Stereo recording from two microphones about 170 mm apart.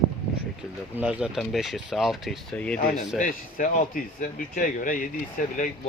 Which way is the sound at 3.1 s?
50° left (ahead or behind).